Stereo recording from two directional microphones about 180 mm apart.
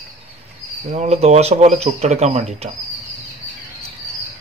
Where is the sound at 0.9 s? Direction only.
40° right (ahead or behind).